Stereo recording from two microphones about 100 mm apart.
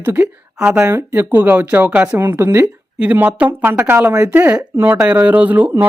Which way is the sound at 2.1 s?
25° right (ahead or behind).